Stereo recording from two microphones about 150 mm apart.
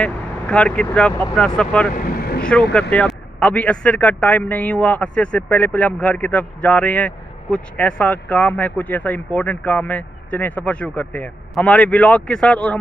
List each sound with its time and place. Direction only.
0.0 s a man's voice: 5° left (ahead or behind)
2.0 s speech: 85° left
2.7 s a man's voice: 10° left (ahead or behind)